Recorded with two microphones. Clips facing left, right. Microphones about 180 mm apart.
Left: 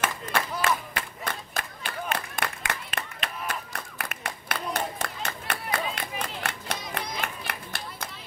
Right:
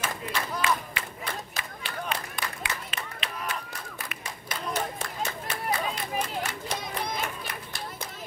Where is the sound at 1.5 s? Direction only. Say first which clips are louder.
Left 2 dB; 50° left (ahead or behind).